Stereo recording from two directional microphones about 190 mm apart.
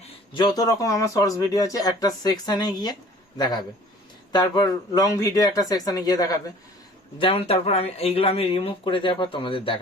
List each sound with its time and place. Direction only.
0.3 s speech: 20° left (ahead or behind)
7.2 s speech: 30° left (ahead or behind)